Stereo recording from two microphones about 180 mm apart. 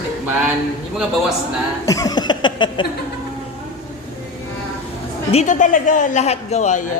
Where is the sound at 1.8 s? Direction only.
20° left (ahead or behind).